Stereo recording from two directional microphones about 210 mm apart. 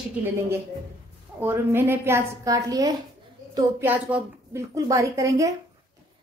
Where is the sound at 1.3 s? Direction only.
10° right (ahead or behind).